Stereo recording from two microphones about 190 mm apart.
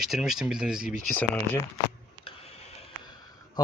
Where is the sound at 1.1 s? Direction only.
5° left (ahead or behind).